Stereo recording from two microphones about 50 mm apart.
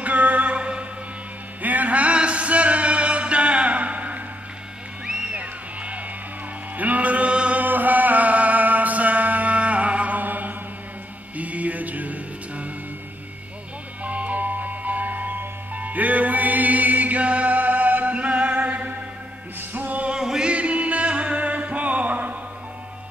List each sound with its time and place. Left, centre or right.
0.0 s music: right
1.6 s music: right
5.0 s music: centre
14.0 s music: right
20.1 s music: centre
20.4 s music: right